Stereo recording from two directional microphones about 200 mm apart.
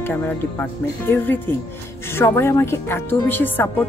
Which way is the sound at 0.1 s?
10° left (ahead or behind).